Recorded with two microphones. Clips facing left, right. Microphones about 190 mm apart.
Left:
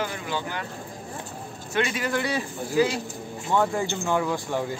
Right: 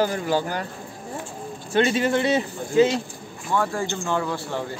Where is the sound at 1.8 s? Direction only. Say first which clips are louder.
Right 6 dB; 30° right (ahead or behind).